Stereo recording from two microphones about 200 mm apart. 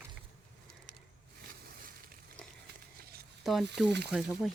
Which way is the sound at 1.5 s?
50° right (ahead or behind).